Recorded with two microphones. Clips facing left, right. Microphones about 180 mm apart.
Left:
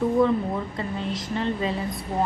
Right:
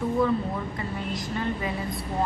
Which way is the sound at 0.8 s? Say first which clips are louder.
Left 2 dB; 25° left (ahead or behind).